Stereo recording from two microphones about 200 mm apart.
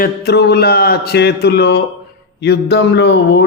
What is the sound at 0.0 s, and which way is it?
A man's voice, 55° left (ahead or behind).